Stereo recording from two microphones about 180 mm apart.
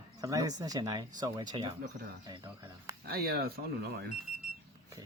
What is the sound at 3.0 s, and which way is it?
Speech, 60° right (ahead or behind).